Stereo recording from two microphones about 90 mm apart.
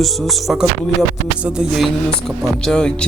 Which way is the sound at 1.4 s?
10° right (ahead or behind).